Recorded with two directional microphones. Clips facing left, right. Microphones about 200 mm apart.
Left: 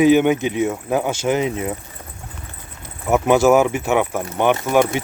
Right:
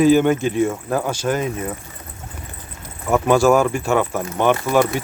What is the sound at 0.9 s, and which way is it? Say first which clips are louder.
Speech: left 2 dB; 20° left (ahead or behind).